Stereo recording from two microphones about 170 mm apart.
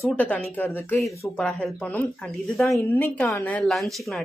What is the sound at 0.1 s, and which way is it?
Speech, 5° left (ahead or behind).